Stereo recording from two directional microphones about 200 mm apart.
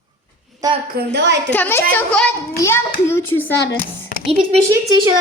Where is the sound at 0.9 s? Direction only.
60° right (ahead or behind).